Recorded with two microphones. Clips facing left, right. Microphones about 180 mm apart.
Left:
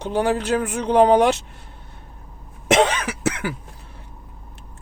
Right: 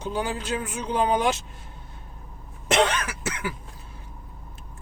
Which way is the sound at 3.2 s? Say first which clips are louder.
Left 9 dB; 70° left (ahead or behind).